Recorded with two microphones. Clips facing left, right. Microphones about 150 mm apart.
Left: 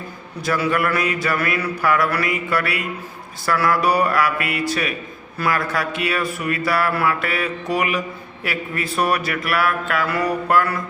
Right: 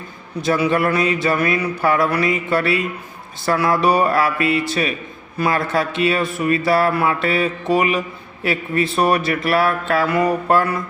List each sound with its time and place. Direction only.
0.4 s speech: 25° right (ahead or behind)